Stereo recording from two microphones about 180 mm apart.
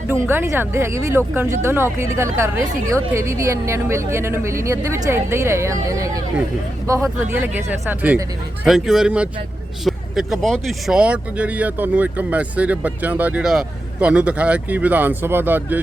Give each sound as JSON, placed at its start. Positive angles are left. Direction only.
{"t": 0.1, "sound": "speech", "side_deg": -10}
{"t": 7.3, "sound": "speech", "side_deg": -10}